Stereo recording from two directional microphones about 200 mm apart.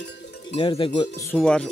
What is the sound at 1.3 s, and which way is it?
Speech, 5° left (ahead or behind).